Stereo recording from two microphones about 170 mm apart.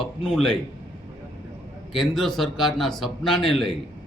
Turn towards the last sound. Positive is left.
turn(degrees=5)  # may be behind; listen again after turning